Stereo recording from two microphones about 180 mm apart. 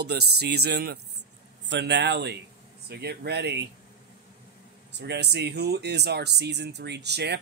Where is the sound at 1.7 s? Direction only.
75° right (ahead or behind).